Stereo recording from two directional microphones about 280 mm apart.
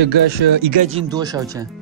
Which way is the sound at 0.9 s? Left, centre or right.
Centre.